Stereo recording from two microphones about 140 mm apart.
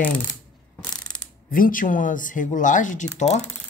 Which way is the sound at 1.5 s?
80° left.